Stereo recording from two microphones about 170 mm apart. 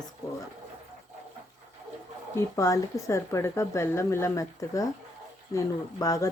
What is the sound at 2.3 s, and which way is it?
Speech, 20° left (ahead or behind).